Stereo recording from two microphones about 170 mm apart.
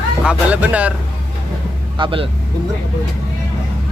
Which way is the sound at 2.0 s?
30° right (ahead or behind).